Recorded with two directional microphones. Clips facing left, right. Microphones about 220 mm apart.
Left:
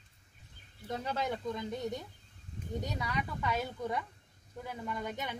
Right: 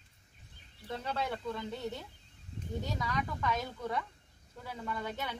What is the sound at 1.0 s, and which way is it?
Speech, 15° left (ahead or behind).